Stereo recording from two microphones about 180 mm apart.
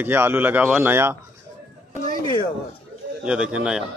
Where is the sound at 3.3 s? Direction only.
5° right (ahead or behind).